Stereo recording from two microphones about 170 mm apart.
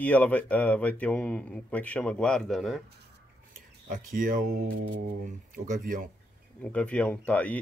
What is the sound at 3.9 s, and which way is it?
Speech, 50° right (ahead or behind).